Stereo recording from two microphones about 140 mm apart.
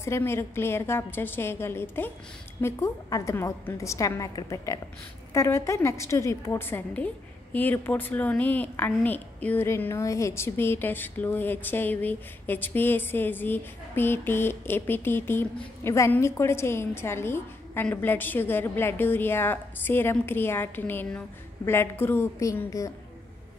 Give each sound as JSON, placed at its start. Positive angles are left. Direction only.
{"t": 0.0, "sound": "a woman's voice", "side_deg": 20}